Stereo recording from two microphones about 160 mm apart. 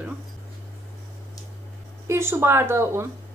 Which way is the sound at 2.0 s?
15° right (ahead or behind).